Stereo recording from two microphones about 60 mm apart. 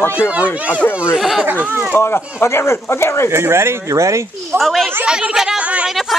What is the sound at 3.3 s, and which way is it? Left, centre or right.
Speech, right.